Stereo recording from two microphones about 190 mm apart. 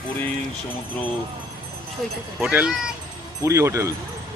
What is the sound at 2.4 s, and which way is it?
Speech, 5° right (ahead or behind).